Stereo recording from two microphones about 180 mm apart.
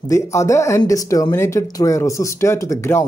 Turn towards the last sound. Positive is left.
turn(degrees=15)  # may be behind; listen again after turning